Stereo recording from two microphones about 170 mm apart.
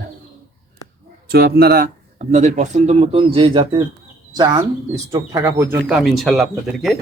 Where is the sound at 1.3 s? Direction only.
65° right (ahead or behind).